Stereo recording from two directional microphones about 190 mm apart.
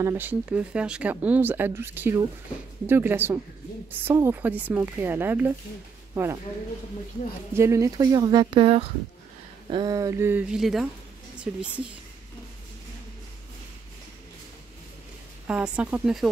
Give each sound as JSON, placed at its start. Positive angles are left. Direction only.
{"t": 0.0, "sound": "speech", "side_deg": -10}
{"t": 7.5, "sound": "speech", "side_deg": -15}
{"t": 15.4, "sound": "speech", "side_deg": -5}